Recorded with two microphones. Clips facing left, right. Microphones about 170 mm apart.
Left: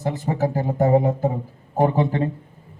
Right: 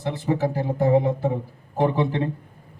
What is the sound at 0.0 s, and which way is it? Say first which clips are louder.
A man's voice: left 1 dB; 40° left (ahead or behind).